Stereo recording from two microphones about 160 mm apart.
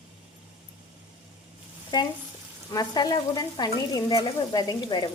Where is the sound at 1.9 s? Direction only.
25° left (ahead or behind).